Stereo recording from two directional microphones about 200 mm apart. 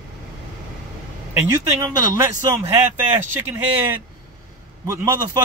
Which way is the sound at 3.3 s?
10° right (ahead or behind).